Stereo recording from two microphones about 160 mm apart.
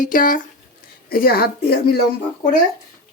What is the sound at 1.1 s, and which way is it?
Speech, 70° left (ahead or behind).